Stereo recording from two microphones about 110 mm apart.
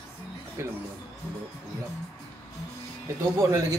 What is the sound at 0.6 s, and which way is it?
Speech, 25° right (ahead or behind).